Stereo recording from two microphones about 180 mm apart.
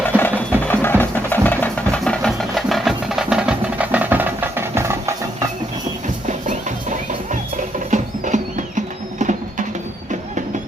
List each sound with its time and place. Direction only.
0.2 s music: 10° left (ahead or behind); by 5.5 s 15° right (ahead or behind)
6.2 s music: 40° right (ahead or behind)